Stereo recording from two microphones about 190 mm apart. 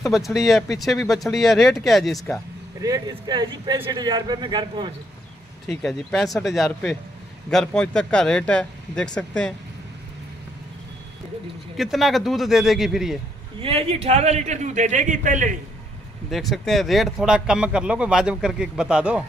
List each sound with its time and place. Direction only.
0.1 s speech: centre (ahead or behind)
2.8 s speech: 20° right (ahead or behind)
5.7 s speech: centre (ahead or behind)
11.7 s speech: centre (ahead or behind)
13.6 s a man's voice: 30° right (ahead or behind)
16.3 s speech: centre (ahead or behind)